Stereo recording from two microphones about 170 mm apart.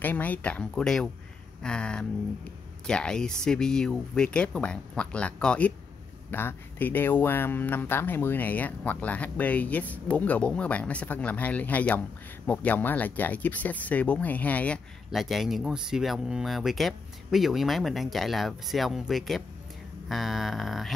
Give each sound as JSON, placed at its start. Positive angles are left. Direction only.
{"t": 0.0, "sound": "speech", "side_deg": 10}